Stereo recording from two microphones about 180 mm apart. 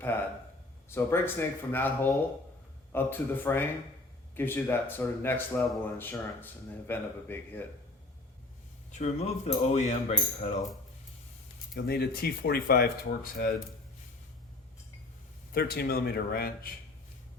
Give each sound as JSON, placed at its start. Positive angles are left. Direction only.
{"t": 0.0, "sound": "a sound", "side_deg": 10}
{"t": 0.9, "sound": "speech", "side_deg": 15}
{"t": 8.9, "sound": "cutlery", "side_deg": 40}
{"t": 11.7, "sound": "speech", "side_deg": 60}
{"t": 15.5, "sound": "speech", "side_deg": 60}